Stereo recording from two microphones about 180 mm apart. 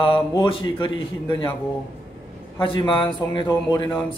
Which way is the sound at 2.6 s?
30° left (ahead or behind).